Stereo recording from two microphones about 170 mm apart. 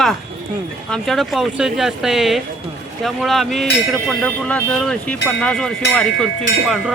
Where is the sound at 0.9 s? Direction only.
5° left (ahead or behind).